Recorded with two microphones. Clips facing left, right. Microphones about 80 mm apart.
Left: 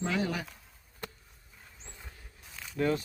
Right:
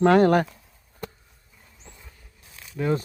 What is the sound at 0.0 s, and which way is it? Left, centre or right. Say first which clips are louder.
Speech: right 15 dB; right.